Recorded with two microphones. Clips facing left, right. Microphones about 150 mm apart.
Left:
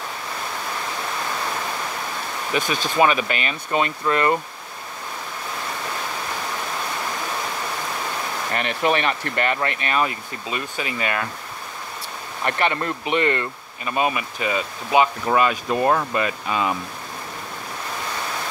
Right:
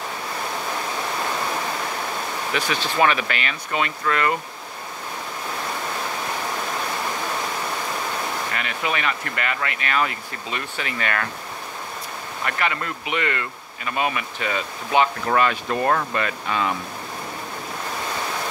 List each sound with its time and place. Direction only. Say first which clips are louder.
2.5 s speech: left 3 dB; 20° left (ahead or behind)
8.5 s speech: left 9 dB; 35° left (ahead or behind)
9.9 s speech: even; 20° left (ahead or behind)
12.4 s speech: left 4 dB; 30° left (ahead or behind)